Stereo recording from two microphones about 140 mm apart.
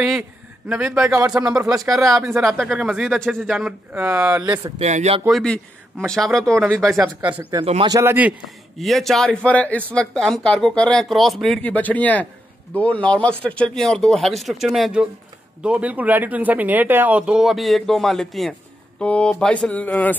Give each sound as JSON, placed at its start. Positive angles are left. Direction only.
{"t": 0.7, "sound": "speech", "side_deg": -5}
{"t": 1.1, "sound": "speech", "side_deg": -25}
{"t": 2.4, "sound": "speech", "side_deg": 0}
{"t": 3.9, "sound": "speech", "side_deg": -20}
{"t": 4.7, "sound": "speech", "side_deg": -50}
{"t": 5.3, "sound": "speech", "side_deg": 5}
{"t": 7.0, "sound": "speech", "side_deg": -15}
{"t": 8.7, "sound": "speech", "side_deg": 0}